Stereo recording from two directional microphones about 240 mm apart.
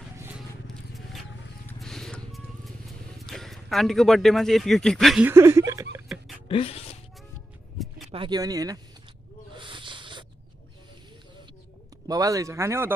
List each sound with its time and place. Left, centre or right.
1.7 s music: centre
3.2 s a man's voice: centre
6.5 s speech: left
8.1 s speech: centre
9.6 s snake: centre
12.1 s speech: centre